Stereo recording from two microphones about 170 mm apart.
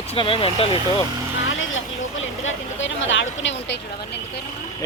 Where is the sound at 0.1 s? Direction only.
30° left (ahead or behind).